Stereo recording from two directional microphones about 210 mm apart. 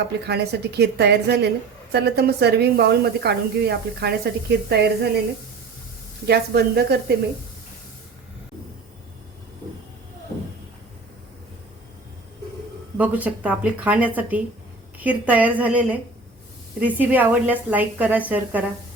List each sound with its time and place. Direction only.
0.3 s a woman's voice: 50° right (ahead or behind)
6.2 s a woman's voice: 50° right (ahead or behind)
13.0 s a woman's voice: 5° right (ahead or behind)